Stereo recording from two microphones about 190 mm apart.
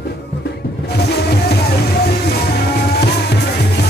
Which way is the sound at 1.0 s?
60° left (ahead or behind).